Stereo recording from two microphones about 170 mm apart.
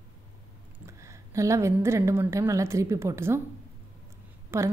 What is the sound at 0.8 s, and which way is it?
A woman's voice, 15° right (ahead or behind).